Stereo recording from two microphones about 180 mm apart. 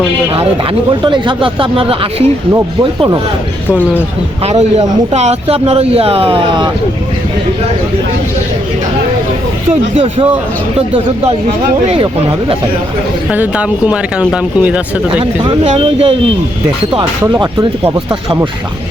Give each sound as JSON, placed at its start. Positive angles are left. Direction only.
{"t": 0.3, "sound": "speech", "side_deg": -30}
{"t": 3.7, "sound": "speech", "side_deg": 10}
{"t": 5.1, "sound": "speech", "side_deg": -35}
{"t": 10.8, "sound": "speech", "side_deg": -30}
{"t": 13.3, "sound": "speech", "side_deg": -10}
{"t": 15.2, "sound": "speech", "side_deg": -30}
{"t": 17.2, "sound": "speech", "side_deg": -20}